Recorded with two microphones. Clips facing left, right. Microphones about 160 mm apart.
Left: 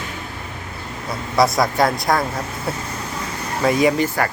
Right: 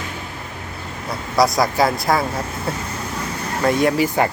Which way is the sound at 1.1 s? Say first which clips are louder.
Even; centre (ahead or behind).